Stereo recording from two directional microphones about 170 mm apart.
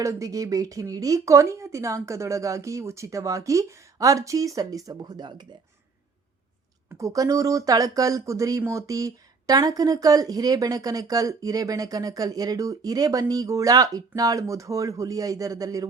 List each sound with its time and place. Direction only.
0.0 s speech: 20° right (ahead or behind)
6.9 s speech: 20° right (ahead or behind)